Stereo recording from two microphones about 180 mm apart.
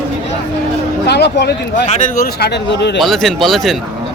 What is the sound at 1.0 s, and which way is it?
Speech, 70° left (ahead or behind).